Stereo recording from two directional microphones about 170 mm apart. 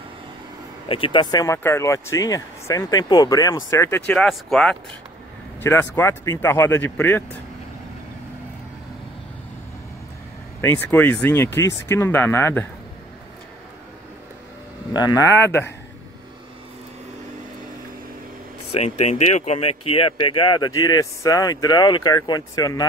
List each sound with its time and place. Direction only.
0.8 s speech: 30° left (ahead or behind)
4.1 s speech: 5° left (ahead or behind)
5.6 s speech: 15° left (ahead or behind)
10.6 s speech: 15° left (ahead or behind)
14.9 s speech: 25° left (ahead or behind)
18.7 s speech: 40° left (ahead or behind); by 22.8 s 25° left (ahead or behind)